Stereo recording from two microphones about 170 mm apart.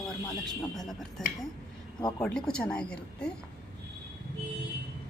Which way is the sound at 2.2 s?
5° left (ahead or behind).